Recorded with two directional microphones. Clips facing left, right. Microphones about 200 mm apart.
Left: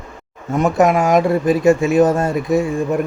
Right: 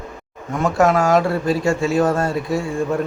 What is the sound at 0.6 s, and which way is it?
Speech, 20° left (ahead or behind).